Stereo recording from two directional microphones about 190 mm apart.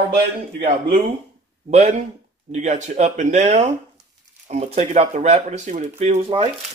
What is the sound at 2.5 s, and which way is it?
Speech, 35° right (ahead or behind).